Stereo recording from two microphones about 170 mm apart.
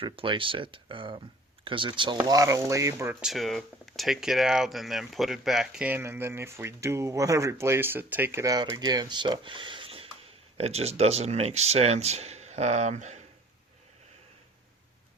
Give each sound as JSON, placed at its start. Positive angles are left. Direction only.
{"t": 0.0, "sound": "speech", "side_deg": -30}
{"t": 3.2, "sound": "speech", "side_deg": 0}